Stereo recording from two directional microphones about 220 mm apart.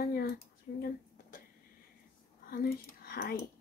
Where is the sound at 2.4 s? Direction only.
45° left (ahead or behind).